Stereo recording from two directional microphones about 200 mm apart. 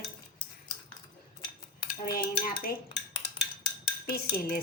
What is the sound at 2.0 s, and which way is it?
Speech, 50° left (ahead or behind).